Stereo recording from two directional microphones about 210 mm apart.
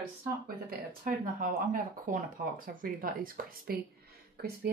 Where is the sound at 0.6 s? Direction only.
40° right (ahead or behind).